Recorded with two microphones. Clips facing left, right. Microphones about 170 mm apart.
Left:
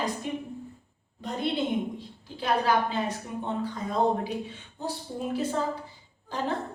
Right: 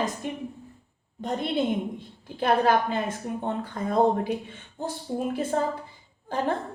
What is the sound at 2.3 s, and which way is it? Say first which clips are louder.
A woman's voice: right 3 dB; 50° right (ahead or behind).